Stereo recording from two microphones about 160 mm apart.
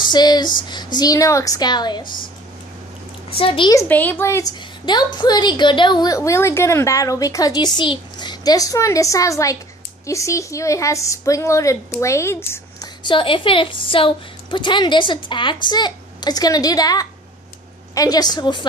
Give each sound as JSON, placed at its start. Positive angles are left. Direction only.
{"t": 0.1, "sound": "a woman's voice", "side_deg": 25}
{"t": 3.3, "sound": "a child's voice", "side_deg": 35}
{"t": 3.7, "sound": "a woman's voice", "side_deg": 10}
{"t": 13.0, "sound": "a woman's voice", "side_deg": 30}